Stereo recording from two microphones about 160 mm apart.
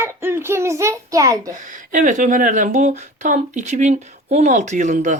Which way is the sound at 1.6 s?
55° right (ahead or behind).